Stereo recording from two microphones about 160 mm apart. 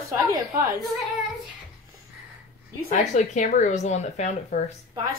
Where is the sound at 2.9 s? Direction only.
45° left (ahead or behind).